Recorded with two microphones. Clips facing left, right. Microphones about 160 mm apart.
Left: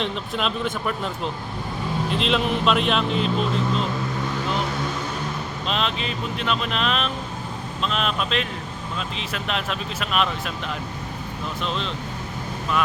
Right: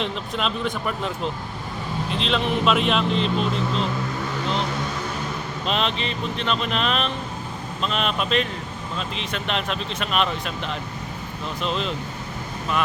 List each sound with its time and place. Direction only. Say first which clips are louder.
0.0 s speech: even; centre (ahead or behind)
5.6 s speech: right 2 dB; centre (ahead or behind)
11.6 s speech: right 2 dB; centre (ahead or behind)